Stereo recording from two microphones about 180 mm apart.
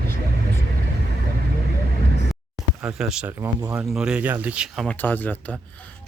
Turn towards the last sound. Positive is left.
turn(degrees=10)  # may be behind; listen again after turning